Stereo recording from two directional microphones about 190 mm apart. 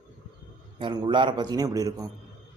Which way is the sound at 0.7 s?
25° right (ahead or behind).